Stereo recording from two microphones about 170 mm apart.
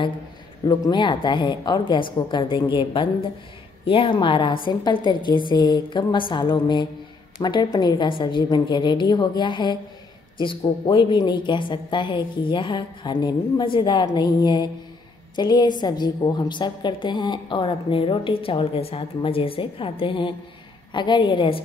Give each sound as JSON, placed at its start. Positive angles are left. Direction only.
{"t": 0.7, "sound": "a woman's voice", "side_deg": 25}